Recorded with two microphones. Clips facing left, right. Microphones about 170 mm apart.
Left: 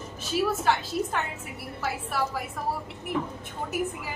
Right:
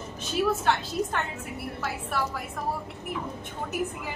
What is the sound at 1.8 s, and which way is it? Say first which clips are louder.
Speech: left 2 dB; centre (ahead or behind).